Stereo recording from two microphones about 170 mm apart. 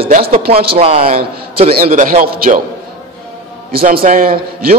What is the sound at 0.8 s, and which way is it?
Speech, 35° right (ahead or behind).